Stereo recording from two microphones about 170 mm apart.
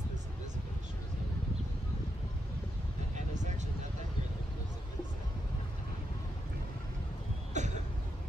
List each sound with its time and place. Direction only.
7.5 s cough: 45° right (ahead or behind)